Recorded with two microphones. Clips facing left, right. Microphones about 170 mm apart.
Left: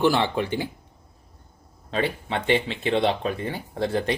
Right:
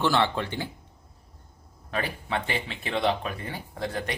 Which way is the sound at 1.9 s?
25° left (ahead or behind).